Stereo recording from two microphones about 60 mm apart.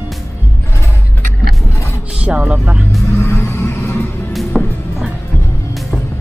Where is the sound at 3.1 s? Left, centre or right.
Left.